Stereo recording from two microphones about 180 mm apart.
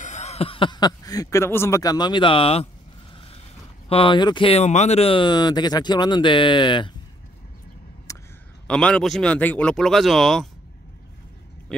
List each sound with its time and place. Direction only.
0.0 s speech: 40° left (ahead or behind)
3.9 s speech: 30° left (ahead or behind)
8.1 s a sound: 15° left (ahead or behind)
8.6 s speech: 5° left (ahead or behind)